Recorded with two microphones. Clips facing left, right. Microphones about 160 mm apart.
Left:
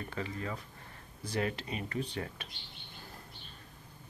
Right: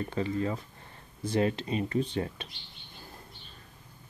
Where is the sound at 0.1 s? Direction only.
30° right (ahead or behind).